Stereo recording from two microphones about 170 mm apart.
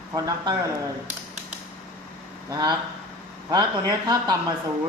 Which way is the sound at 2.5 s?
25° right (ahead or behind).